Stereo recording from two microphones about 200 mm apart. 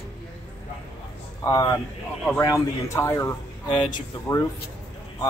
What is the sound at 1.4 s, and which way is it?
Speech, 15° left (ahead or behind).